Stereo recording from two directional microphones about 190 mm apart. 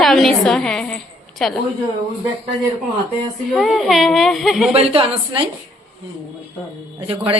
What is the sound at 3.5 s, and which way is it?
Speech, centre (ahead or behind).